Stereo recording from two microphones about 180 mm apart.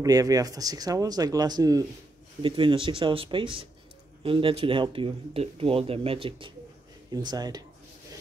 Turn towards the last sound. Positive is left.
turn(degrees=-20)  # may be behind; listen again after turning